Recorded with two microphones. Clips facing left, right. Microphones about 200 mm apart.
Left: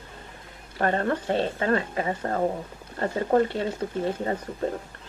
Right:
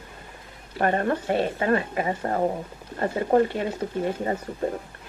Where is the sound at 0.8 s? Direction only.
20° right (ahead or behind).